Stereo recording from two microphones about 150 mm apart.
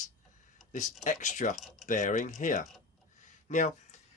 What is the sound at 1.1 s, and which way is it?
Speech, 55° left (ahead or behind).